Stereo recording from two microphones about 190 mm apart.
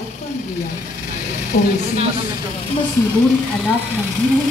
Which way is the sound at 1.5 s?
55° left (ahead or behind).